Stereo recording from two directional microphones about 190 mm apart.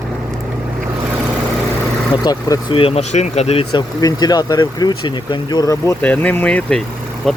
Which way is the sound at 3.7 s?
20° left (ahead or behind).